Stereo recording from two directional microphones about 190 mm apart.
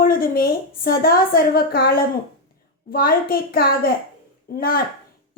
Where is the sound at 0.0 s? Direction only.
50° left (ahead or behind).